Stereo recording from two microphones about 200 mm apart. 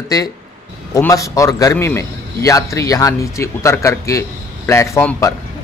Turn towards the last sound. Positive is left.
turn(degrees=10)  # may be behind; listen again after turning